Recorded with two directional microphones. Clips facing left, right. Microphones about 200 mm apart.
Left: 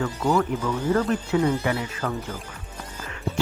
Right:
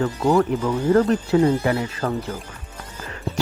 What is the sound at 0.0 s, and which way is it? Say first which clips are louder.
Speech: right 4 dB; 35° right (ahead or behind).